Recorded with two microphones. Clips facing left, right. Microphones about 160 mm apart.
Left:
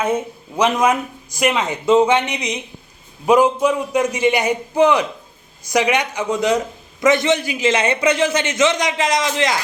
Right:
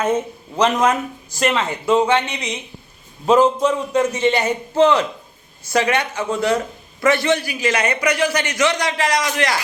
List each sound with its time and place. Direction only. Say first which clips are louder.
0.0 s a man's voice: right 1 dB; 10° left (ahead or behind)